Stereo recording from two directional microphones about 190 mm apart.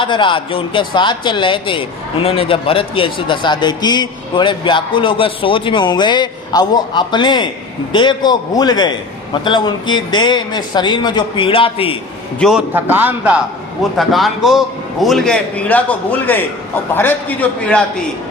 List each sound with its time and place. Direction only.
0.0 s a man's voice: 25° left (ahead or behind)
12.4 s a man's voice: 5° right (ahead or behind)